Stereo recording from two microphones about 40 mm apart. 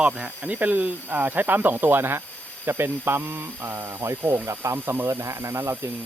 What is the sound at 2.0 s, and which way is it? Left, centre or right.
Speech, right.